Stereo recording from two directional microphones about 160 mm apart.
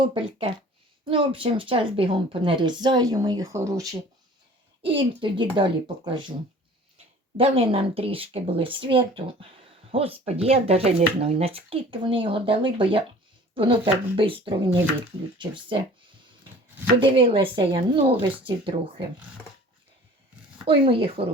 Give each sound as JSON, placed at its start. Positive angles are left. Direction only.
{"t": 0.0, "sound": "speech", "side_deg": -30}
{"t": 4.8, "sound": "speech", "side_deg": -30}
{"t": 7.3, "sound": "speech", "side_deg": -35}
{"t": 17.0, "sound": "speech", "side_deg": -30}
{"t": 20.7, "sound": "speech", "side_deg": -35}